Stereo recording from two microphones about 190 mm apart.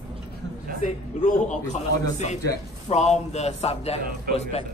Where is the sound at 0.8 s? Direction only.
40° left (ahead or behind).